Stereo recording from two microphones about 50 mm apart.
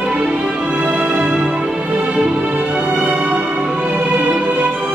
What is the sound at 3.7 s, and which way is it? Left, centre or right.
Music, right.